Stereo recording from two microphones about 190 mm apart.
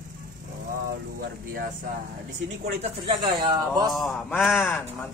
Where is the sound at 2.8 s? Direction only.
30° right (ahead or behind).